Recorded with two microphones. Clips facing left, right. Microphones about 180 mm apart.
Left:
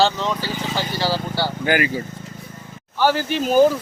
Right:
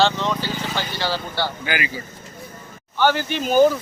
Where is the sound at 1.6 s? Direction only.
45° left (ahead or behind).